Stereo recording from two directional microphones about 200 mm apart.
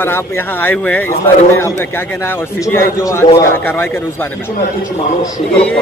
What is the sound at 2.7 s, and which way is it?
A man's voice, 15° left (ahead or behind).